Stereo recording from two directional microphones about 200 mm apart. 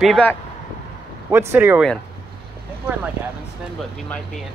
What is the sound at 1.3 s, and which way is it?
Speech, 10° right (ahead or behind).